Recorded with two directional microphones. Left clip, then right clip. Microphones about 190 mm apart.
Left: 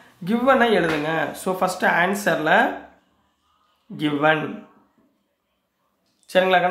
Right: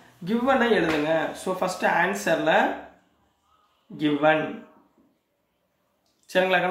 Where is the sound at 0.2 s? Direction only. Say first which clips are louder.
Left 5 dB; 35° left (ahead or behind).